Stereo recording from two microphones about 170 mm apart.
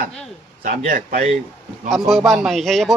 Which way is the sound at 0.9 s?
55° right (ahead or behind).